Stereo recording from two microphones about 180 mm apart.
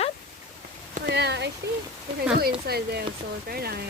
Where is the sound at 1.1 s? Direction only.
70° right (ahead or behind).